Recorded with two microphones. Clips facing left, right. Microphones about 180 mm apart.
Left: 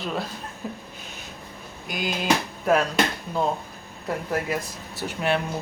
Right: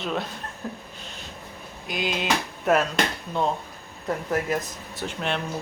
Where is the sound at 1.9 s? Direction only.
Centre (ahead or behind).